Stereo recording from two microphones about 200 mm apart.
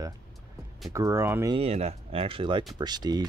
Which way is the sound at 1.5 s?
30° right (ahead or behind).